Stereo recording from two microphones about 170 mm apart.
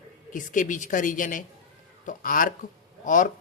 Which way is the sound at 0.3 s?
50° left (ahead or behind).